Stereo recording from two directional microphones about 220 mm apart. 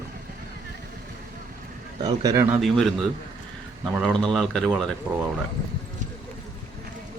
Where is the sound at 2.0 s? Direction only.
15° right (ahead or behind).